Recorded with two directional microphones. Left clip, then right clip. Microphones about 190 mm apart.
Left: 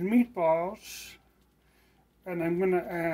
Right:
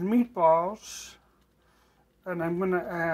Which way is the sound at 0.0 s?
10° right (ahead or behind).